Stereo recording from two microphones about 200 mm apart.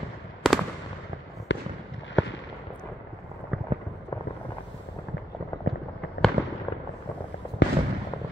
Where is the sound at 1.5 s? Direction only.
65° left (ahead or behind).